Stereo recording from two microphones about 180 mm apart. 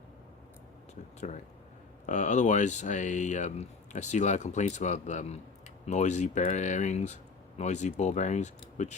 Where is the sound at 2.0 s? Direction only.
40° left (ahead or behind).